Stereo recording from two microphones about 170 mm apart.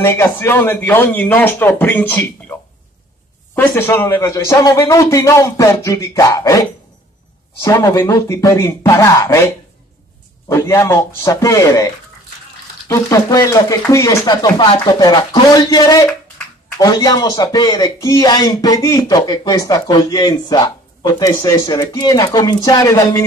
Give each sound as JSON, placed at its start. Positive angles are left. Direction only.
{"t": 0.0, "sound": "a man's voice", "side_deg": 15}
{"t": 3.5, "sound": "a man's voice", "side_deg": 15}
{"t": 7.6, "sound": "a man's voice", "side_deg": 15}
{"t": 10.5, "sound": "a man's voice", "side_deg": 15}